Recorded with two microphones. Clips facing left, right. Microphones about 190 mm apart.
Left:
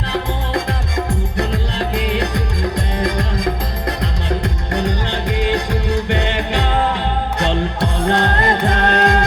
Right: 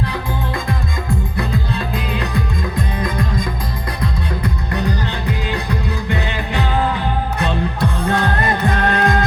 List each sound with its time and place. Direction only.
1.4 s music: 80° left
4.3 s music: 80° left